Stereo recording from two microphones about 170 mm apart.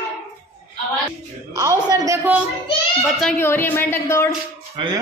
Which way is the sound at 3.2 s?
10° left (ahead or behind).